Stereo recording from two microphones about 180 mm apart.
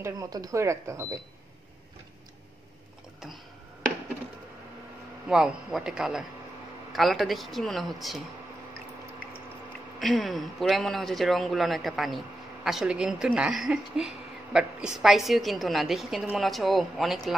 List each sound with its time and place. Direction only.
0.0 s speech: 20° right (ahead or behind)
5.3 s speech: 5° right (ahead or behind)
9.9 s speech: centre (ahead or behind)